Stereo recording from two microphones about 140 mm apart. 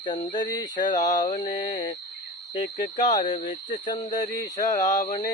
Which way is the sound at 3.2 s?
35° left (ahead or behind).